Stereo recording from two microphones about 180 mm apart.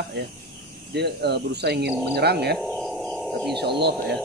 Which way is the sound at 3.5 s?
65° right (ahead or behind).